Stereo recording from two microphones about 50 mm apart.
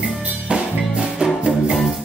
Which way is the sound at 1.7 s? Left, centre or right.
Centre.